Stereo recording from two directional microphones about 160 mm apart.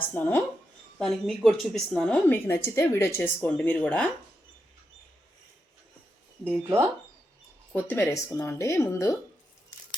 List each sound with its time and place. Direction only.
0.1 s a woman's voice: 10° left (ahead or behind)
6.4 s speech: 15° right (ahead or behind)
7.7 s a woman's voice: 10° left (ahead or behind)